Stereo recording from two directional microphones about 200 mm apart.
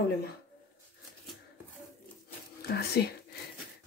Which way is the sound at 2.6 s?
55° left (ahead or behind).